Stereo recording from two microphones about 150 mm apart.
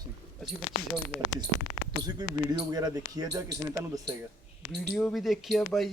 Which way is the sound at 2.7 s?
25° right (ahead or behind).